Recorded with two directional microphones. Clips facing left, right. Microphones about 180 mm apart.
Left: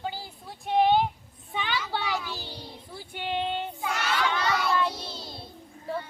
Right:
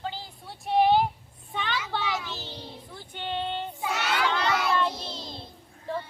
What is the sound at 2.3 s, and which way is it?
Child singing, 10° left (ahead or behind).